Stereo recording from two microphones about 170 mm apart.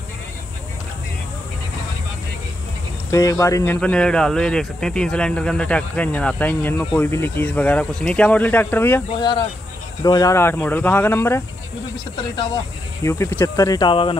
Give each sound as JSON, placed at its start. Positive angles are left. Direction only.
{"t": 3.1, "sound": "speech", "side_deg": 20}
{"t": 9.2, "sound": "speech", "side_deg": 25}
{"t": 12.2, "sound": "speech", "side_deg": 25}